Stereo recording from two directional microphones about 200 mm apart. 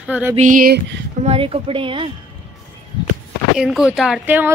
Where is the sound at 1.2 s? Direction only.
30° right (ahead or behind).